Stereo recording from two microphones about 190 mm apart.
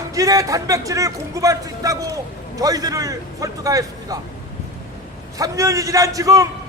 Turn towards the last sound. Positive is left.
turn(degrees=-15)  # may be behind; listen again after turning